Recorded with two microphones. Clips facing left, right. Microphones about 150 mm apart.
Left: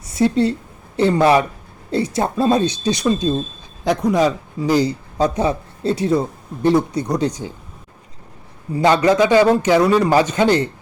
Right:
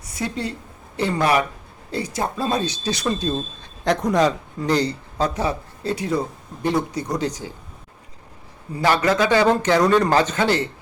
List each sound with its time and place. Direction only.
0.0 s a woman's voice: 25° left (ahead or behind)
8.7 s speech: 25° left (ahead or behind)